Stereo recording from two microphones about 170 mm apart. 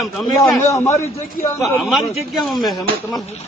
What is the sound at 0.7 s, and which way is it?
Speech, 15° left (ahead or behind).